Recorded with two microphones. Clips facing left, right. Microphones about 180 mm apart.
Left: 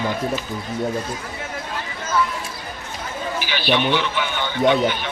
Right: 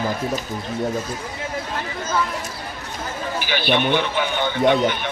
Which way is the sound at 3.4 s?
50° right (ahead or behind).